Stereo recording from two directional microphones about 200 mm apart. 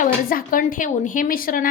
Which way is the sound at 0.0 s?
45° left (ahead or behind).